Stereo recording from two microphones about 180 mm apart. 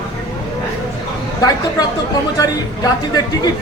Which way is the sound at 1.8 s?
20° left (ahead or behind).